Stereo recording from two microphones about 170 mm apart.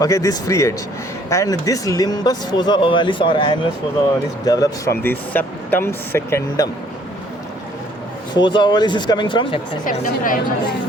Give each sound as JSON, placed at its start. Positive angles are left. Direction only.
{"t": 0.0, "sound": "speech", "side_deg": 20}
{"t": 8.4, "sound": "speech", "side_deg": 25}
{"t": 9.8, "sound": "a woman's voice", "side_deg": 50}